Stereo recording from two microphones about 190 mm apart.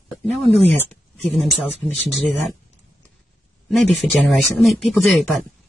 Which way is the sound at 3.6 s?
Centre (ahead or behind).